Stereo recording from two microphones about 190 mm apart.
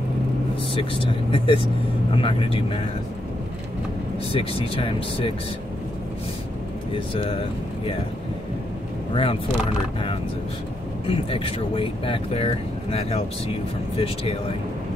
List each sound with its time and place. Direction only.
1.3 s speech: 30° left (ahead or behind)
4.3 s speech: 30° left (ahead or behind)
9.1 s speech: 30° left (ahead or behind)
11.1 s speech: 30° left (ahead or behind)